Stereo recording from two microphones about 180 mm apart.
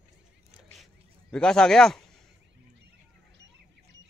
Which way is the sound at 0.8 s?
5° left (ahead or behind).